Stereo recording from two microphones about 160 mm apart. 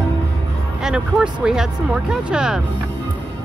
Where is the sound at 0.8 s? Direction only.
5° right (ahead or behind).